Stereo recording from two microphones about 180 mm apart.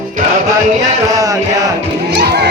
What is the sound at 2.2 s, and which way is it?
Speech, 65° right (ahead or behind).